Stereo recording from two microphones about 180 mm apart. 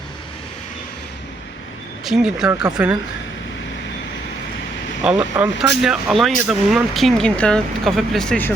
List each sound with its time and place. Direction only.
2.0 s speech: 5° right (ahead or behind)
2.5 s speech: 20° right (ahead or behind)
2.7 s speech: 5° right (ahead or behind)
5.0 s speech: 5° right (ahead or behind)